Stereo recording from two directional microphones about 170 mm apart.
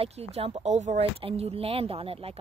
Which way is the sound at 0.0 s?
35° right (ahead or behind).